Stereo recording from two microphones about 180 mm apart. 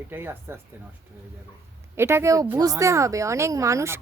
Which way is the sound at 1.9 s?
15° right (ahead or behind).